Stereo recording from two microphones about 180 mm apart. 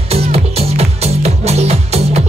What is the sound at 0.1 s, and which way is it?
Music, 35° right (ahead or behind).